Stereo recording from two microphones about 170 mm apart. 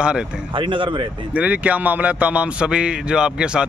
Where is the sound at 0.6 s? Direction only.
30° right (ahead or behind).